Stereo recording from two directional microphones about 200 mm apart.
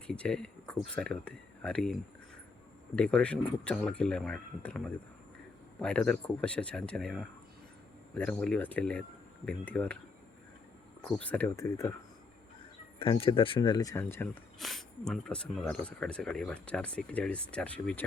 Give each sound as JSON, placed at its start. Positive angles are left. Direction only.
{"t": 0.1, "sound": "speech", "side_deg": 5}
{"t": 11.2, "sound": "speech", "side_deg": 10}
{"t": 13.0, "sound": "speech", "side_deg": 25}
{"t": 14.6, "sound": "speech", "side_deg": 0}